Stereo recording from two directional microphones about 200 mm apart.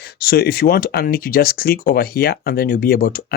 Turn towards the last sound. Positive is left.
turn(degrees=45)  # may be behind; listen again after turning